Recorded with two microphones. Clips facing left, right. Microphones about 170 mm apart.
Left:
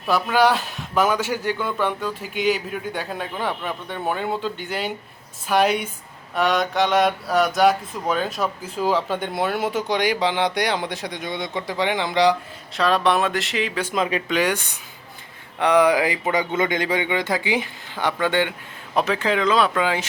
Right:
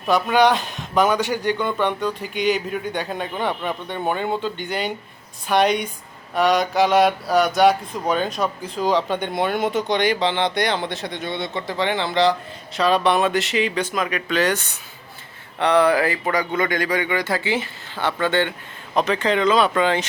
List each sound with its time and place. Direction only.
0.1 s speech: centre (ahead or behind)
12.7 s speech: centre (ahead or behind)
13.9 s speech: 25° left (ahead or behind)
14.3 s speech: 10° left (ahead or behind)